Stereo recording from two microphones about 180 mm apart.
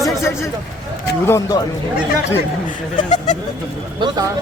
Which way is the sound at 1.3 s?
15° left (ahead or behind).